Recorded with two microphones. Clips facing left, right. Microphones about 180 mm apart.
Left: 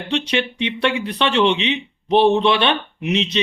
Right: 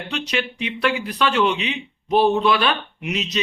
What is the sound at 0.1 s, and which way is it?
Speech, 25° left (ahead or behind).